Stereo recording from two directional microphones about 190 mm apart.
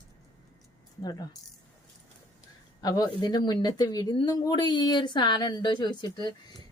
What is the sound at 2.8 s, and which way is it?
Speech, 20° left (ahead or behind).